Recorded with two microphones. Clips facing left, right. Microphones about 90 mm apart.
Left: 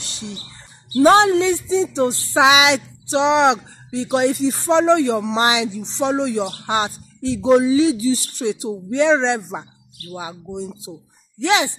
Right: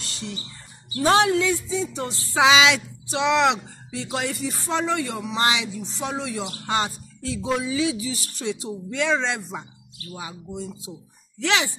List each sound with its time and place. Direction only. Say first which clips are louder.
0.0 s bird: left 2 dB; 20° left (ahead or behind)
1.0 s speech: left 6 dB; 25° left (ahead or behind)
8.5 s speech: left 6 dB; 20° left (ahead or behind)